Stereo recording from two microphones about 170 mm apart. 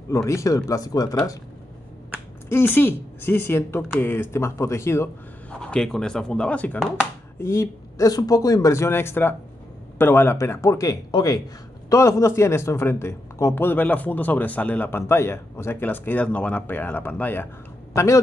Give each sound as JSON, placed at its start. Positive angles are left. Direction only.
{"t": 0.1, "sound": "speech", "side_deg": 15}
{"t": 2.5, "sound": "speech", "side_deg": 10}